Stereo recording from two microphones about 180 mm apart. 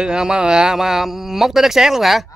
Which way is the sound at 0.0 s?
5° right (ahead or behind).